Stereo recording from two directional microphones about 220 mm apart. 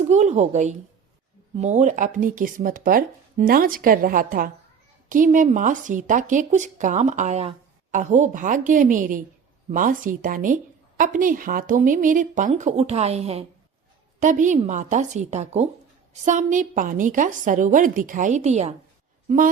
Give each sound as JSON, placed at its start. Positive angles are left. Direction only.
{"t": 0.0, "sound": "a woman's voice", "side_deg": -30}